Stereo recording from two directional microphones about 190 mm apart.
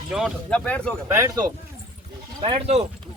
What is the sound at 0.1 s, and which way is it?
Speech, centre (ahead or behind).